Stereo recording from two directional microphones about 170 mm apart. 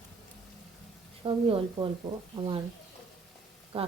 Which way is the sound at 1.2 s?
30° right (ahead or behind).